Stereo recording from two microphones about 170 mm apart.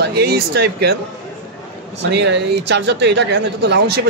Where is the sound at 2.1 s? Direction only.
90° right.